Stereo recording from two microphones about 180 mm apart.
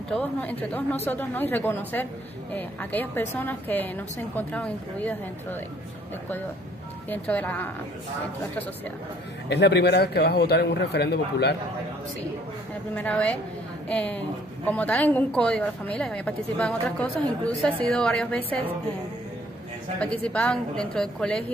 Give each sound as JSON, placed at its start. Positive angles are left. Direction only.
{"t": 0.1, "sound": "a woman's voice", "side_deg": 5}
{"t": 7.1, "sound": "a woman's voice", "side_deg": 10}
{"t": 9.5, "sound": "a man's voice", "side_deg": 70}
{"t": 12.9, "sound": "a woman's voice", "side_deg": 10}
{"t": 20.0, "sound": "a woman's voice", "side_deg": 5}